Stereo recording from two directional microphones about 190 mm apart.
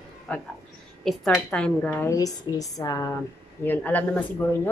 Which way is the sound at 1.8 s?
15° left (ahead or behind).